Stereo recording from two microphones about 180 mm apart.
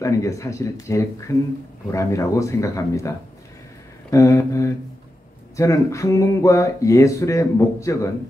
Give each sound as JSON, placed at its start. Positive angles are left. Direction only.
{"t": 0.0, "sound": "speech", "side_deg": 15}
{"t": 4.1, "sound": "speech", "side_deg": 15}